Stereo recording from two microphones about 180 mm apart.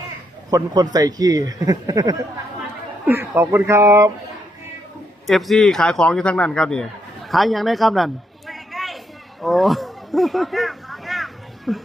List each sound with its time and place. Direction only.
0.5 s speech: 20° right (ahead or behind)
3.3 s speech: 15° right (ahead or behind)
5.2 s a man's voice: centre (ahead or behind)
9.4 s a sound: centre (ahead or behind)